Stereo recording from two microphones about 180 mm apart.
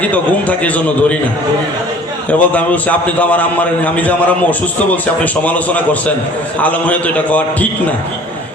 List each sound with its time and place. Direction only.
0.0 s a man's voice: 10° left (ahead or behind)
2.4 s a man's voice: 10° left (ahead or behind)